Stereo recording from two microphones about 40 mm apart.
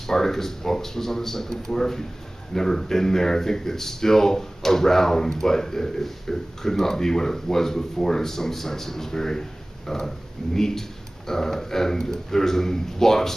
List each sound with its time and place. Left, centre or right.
0.0 s speech: centre